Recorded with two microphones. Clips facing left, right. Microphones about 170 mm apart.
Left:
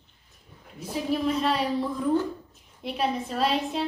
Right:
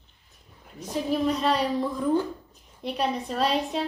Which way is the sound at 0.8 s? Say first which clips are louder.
Right 1 dB; 5° left (ahead or behind).